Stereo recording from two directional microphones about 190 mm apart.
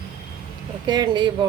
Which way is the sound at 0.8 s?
20° right (ahead or behind).